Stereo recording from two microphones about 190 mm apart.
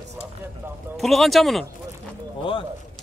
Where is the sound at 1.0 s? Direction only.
Centre (ahead or behind).